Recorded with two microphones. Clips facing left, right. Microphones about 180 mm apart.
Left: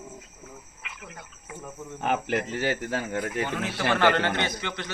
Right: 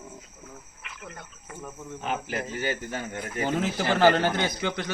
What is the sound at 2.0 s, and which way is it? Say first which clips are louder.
Speech: left 5 dB; 65° left (ahead or behind).